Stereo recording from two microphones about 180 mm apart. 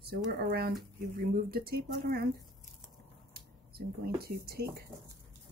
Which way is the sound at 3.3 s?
60° right (ahead or behind).